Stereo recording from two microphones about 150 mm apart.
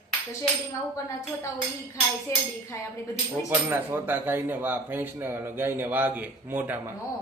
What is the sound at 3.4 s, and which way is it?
Speech, 15° right (ahead or behind).